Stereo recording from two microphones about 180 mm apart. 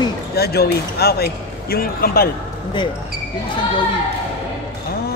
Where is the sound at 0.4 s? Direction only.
60° left (ahead or behind).